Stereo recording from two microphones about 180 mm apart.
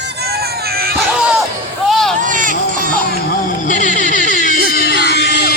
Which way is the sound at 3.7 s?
45° left (ahead or behind).